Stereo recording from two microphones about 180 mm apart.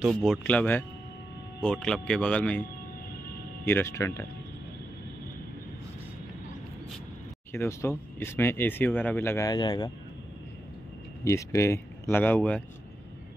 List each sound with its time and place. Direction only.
0.0 s speech: centre (ahead or behind)
3.6 s speech: 15° left (ahead or behind)
7.5 s speech: 15° left (ahead or behind)
11.2 s speech: 15° left (ahead or behind)